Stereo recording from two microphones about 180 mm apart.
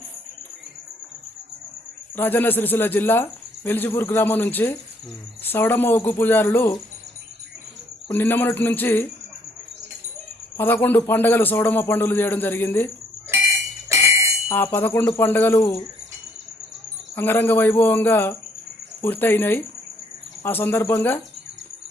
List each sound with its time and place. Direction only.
2.1 s speech: 10° left (ahead or behind)
8.0 s speech: 10° left (ahead or behind)
10.6 s speech: 10° left (ahead or behind)
13.9 s music: 15° right (ahead or behind)
14.5 s speech: 10° left (ahead or behind)
17.2 s speech: 10° left (ahead or behind)